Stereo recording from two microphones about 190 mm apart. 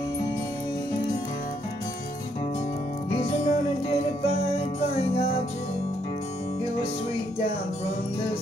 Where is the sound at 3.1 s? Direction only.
30° left (ahead or behind).